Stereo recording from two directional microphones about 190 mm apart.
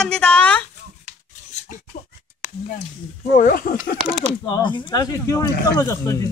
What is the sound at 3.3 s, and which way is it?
Speech, 45° left (ahead or behind).